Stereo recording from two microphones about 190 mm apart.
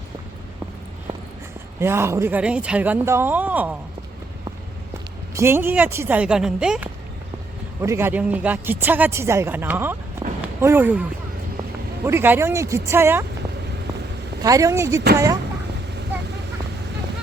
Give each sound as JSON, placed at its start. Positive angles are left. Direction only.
{"t": 1.8, "sound": "speech", "side_deg": -15}
{"t": 5.3, "sound": "speech", "side_deg": -15}
{"t": 12.0, "sound": "speech", "side_deg": -10}
{"t": 14.4, "sound": "speech", "side_deg": -15}